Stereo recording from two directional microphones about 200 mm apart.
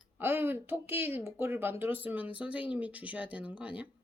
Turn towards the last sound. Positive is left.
turn(degrees=-5)  # may be behind; listen again after turning